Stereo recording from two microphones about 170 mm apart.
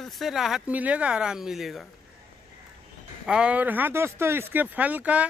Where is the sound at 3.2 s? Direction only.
5° right (ahead or behind).